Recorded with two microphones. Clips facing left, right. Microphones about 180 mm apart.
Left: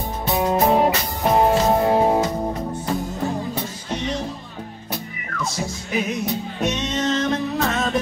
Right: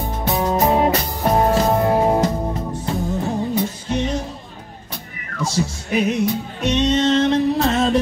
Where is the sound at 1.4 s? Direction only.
10° left (ahead or behind).